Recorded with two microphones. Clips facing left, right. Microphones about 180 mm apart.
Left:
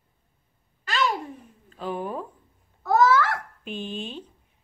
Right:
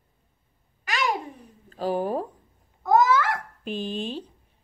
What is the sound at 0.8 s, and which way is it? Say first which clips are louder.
Babbling: left 2 dB; 15° right (ahead or behind).